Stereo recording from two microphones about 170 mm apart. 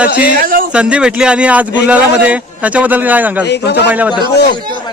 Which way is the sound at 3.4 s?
80° left.